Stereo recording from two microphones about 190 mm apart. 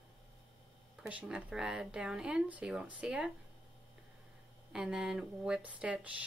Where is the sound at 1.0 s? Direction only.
5° right (ahead or behind).